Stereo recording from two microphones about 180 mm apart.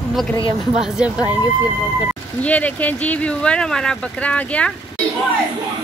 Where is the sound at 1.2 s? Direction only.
20° left (ahead or behind).